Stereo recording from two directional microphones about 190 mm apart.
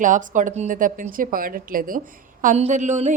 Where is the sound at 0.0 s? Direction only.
45° right (ahead or behind).